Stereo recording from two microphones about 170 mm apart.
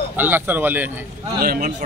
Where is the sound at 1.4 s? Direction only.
60° right (ahead or behind).